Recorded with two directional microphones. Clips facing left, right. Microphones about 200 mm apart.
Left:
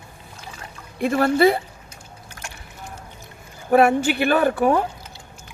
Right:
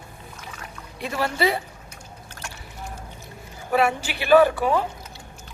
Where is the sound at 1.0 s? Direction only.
50° left (ahead or behind).